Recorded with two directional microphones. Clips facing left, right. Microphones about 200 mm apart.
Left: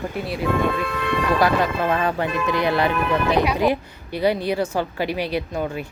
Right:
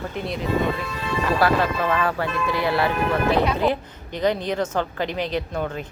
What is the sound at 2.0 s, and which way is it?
Speech, 20° left (ahead or behind).